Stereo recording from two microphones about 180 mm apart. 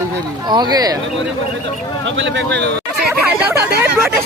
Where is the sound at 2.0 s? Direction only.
90° right; by 2.7 s 75° right (ahead or behind).